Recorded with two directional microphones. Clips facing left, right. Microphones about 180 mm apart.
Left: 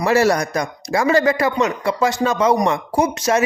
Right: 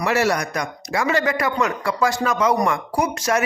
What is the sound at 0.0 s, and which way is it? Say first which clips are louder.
A man's voice: left 4 dB; 35° left (ahead or behind).